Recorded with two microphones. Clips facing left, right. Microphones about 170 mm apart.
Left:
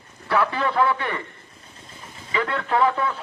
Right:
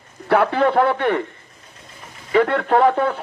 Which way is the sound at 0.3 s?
60° right (ahead or behind).